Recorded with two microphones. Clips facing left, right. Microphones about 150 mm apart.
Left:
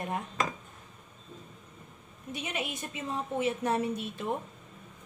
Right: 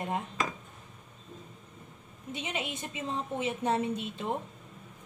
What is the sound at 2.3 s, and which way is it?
A woman's voice, 20° right (ahead or behind).